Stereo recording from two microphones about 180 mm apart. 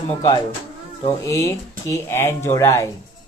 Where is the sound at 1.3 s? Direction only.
20° left (ahead or behind).